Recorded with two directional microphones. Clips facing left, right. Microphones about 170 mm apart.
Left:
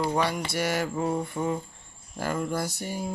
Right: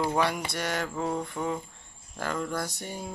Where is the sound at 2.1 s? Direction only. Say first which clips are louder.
Left 3 dB; 10° left (ahead or behind).